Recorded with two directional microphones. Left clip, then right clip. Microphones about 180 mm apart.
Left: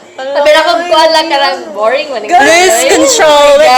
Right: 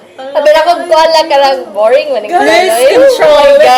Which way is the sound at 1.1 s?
50° right (ahead or behind).